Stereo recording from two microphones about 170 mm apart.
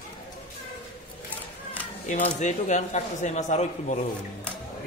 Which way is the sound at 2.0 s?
45° left (ahead or behind).